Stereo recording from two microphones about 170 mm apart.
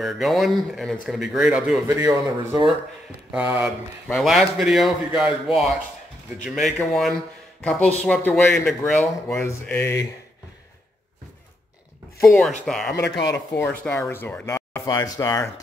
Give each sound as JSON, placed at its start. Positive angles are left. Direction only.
{"t": 0.0, "sound": "speech", "side_deg": 0}
{"t": 1.9, "sound": "a man's voice", "side_deg": -20}
{"t": 4.1, "sound": "speech", "side_deg": 0}
{"t": 9.4, "sound": "speech", "side_deg": 15}
{"t": 12.3, "sound": "speech", "side_deg": 0}